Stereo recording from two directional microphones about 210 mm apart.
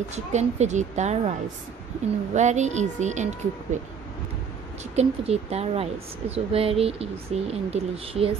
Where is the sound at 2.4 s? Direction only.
35° right (ahead or behind).